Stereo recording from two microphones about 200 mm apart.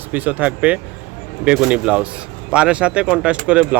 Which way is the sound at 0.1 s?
10° right (ahead or behind).